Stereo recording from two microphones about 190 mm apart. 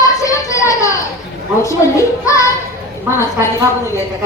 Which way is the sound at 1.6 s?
15° left (ahead or behind).